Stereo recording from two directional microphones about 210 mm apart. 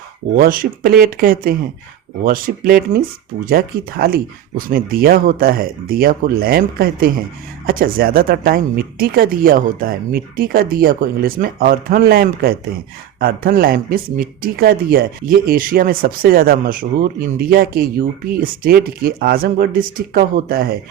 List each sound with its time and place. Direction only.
0.3 s speech: 45° right (ahead or behind)